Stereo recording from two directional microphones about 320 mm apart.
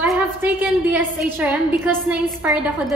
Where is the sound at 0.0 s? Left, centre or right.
Centre.